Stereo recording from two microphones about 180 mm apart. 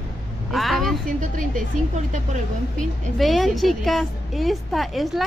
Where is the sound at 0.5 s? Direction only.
Centre (ahead or behind).